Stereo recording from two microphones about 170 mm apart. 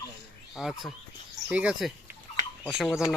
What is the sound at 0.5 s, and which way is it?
Speech, centre (ahead or behind).